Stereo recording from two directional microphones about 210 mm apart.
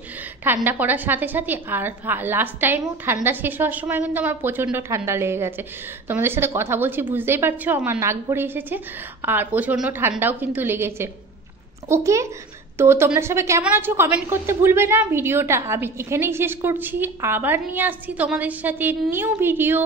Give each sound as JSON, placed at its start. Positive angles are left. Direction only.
{"t": 0.4, "sound": "a woman's voice", "side_deg": -10}